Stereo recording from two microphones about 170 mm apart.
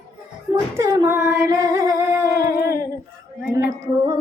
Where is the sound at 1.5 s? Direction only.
20° right (ahead or behind).